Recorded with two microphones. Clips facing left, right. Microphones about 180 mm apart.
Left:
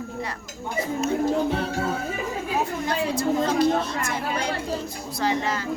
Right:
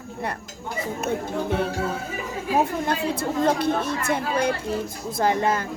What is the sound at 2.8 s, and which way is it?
A woman's voice, 55° right (ahead or behind).